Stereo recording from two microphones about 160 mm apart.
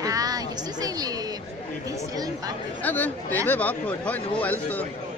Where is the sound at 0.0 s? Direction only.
25° right (ahead or behind).